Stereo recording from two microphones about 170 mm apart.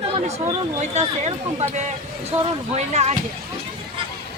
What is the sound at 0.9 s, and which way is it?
Speech, 40° right (ahead or behind).